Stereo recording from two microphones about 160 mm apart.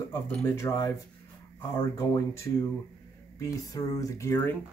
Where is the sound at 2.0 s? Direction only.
20° left (ahead or behind).